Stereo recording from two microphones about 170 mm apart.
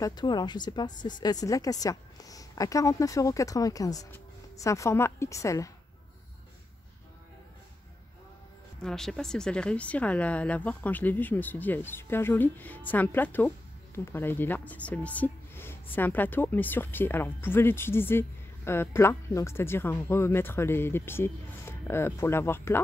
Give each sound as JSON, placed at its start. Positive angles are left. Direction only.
{"t": 0.0, "sound": "speech", "side_deg": 25}
{"t": 8.8, "sound": "speech", "side_deg": 5}